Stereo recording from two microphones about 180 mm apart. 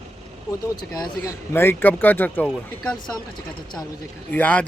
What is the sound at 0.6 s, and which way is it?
Speech, 20° left (ahead or behind).